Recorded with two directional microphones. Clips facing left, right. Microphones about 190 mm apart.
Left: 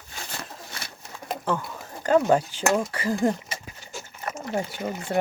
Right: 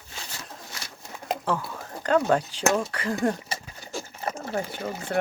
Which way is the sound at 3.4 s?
30° right (ahead or behind).